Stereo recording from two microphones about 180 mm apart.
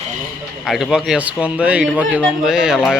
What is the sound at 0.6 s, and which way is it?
A man's voice, centre (ahead or behind).